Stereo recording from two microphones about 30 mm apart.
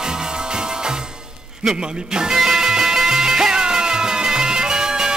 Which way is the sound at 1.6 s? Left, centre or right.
Right.